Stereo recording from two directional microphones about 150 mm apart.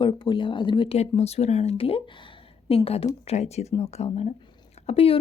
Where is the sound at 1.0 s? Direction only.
45° left (ahead or behind).